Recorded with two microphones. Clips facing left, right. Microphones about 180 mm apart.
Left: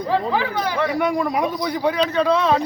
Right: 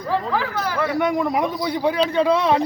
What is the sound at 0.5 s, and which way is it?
Speech, 15° left (ahead or behind).